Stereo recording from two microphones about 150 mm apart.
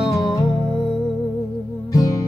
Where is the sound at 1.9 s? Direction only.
20° left (ahead or behind).